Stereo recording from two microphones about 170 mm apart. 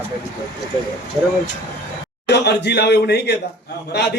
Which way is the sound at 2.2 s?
90° left.